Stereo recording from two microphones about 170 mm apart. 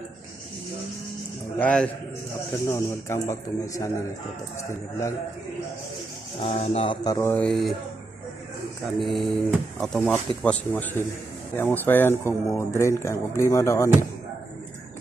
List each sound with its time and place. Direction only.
1.6 s speech: 5° left (ahead or behind)
2.6 s speech: 15° left (ahead or behind)
6.4 s speech: 40° left (ahead or behind)
7.2 s speech: 10° left (ahead or behind)
8.9 s speech: centre (ahead or behind); by 13.8 s 15° left (ahead or behind)